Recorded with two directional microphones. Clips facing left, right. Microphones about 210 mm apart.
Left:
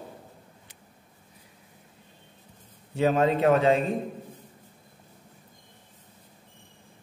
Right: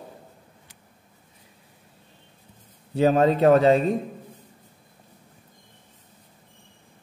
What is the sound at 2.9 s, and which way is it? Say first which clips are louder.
Speech: right 4 dB; 35° right (ahead or behind).